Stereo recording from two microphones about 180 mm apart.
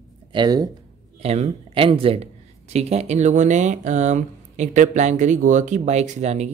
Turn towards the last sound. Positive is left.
turn(degrees=-40)  # may be behind; listen again after turning